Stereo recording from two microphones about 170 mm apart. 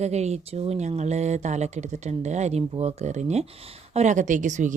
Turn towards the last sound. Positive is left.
turn(degrees=-45)  # may be behind; listen again after turning